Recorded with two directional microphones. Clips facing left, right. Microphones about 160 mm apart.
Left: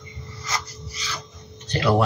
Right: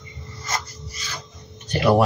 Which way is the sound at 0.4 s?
50° right (ahead or behind).